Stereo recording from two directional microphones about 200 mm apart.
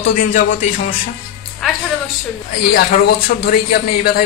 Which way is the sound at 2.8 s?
50° left (ahead or behind).